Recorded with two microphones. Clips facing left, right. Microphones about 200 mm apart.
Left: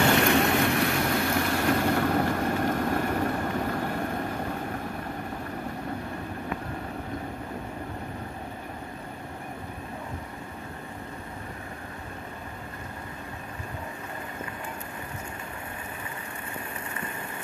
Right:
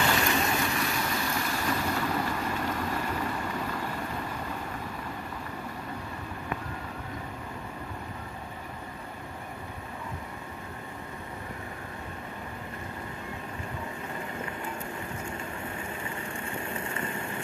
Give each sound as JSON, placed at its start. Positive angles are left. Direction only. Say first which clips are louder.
{"t": 0.0, "sound": "vehicle", "louder": "left 5 dB", "side_deg": 60}